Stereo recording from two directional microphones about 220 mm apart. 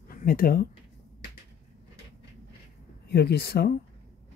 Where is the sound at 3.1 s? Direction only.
45° left (ahead or behind).